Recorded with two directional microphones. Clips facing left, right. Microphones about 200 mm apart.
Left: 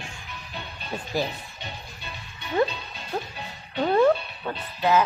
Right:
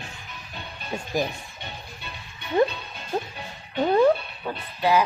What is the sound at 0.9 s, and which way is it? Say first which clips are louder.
Speech: right 1 dB; 15° right (ahead or behind).